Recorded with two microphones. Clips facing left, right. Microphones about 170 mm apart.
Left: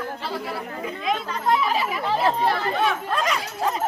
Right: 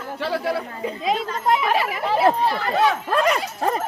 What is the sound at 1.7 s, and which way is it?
Speech, 65° right (ahead or behind).